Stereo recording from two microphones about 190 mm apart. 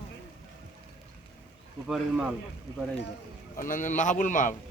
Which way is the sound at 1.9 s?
5° right (ahead or behind).